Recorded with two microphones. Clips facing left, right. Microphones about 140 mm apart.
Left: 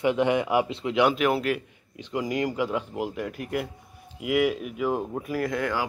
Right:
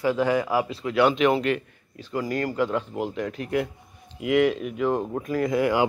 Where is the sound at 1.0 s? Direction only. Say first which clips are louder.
Right 3 dB; 5° left (ahead or behind).